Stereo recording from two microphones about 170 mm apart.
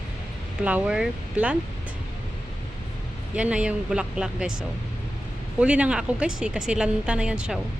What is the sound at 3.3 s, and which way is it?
Speech, 5° right (ahead or behind).